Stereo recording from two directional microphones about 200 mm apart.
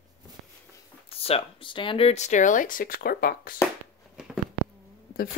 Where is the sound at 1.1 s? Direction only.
30° left (ahead or behind); by 3.5 s 50° left (ahead or behind).